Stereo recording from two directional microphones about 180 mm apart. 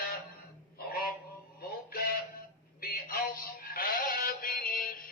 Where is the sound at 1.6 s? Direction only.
55° left (ahead or behind).